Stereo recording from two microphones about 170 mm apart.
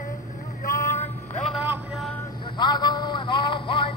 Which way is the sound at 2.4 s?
25° left (ahead or behind).